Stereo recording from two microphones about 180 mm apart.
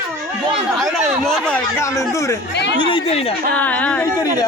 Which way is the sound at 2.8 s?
30° left (ahead or behind).